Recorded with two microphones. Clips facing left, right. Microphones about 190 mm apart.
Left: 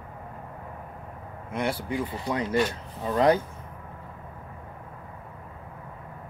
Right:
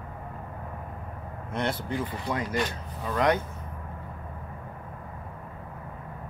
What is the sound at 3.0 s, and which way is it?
Speech, 30° left (ahead or behind).